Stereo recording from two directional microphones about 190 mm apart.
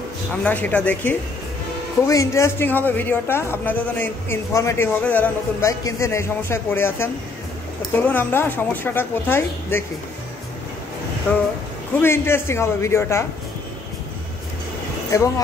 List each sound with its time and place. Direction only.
0.4 s a man's voice: 10° left (ahead or behind)
8.1 s a man's voice: 10° left (ahead or behind)
12.0 s a man's voice: 10° left (ahead or behind)
15.0 s a man's voice: 15° left (ahead or behind)